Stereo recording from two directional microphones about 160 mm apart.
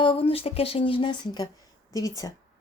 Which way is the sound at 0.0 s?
35° left (ahead or behind).